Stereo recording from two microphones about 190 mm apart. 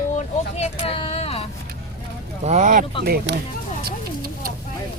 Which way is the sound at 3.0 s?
60° right (ahead or behind).